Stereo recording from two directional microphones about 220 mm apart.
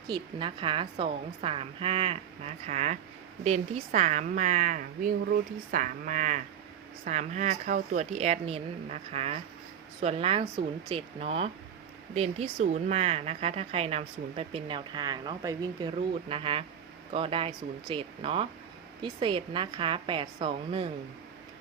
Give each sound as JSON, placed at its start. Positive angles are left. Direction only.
{"t": 0.1, "sound": "a woman's voice", "side_deg": -20}